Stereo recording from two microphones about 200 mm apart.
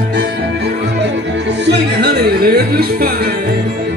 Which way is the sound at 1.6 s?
55° right (ahead or behind).